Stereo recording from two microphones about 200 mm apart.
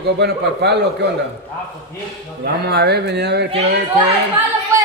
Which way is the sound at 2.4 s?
55° right (ahead or behind).